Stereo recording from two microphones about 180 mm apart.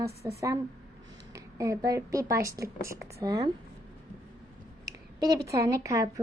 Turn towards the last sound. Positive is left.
turn(degrees=-15)  # may be behind; listen again after turning